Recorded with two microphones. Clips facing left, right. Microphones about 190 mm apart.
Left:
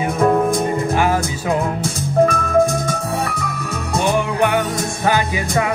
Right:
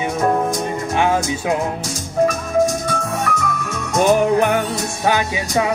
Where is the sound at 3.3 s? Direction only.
35° left (ahead or behind).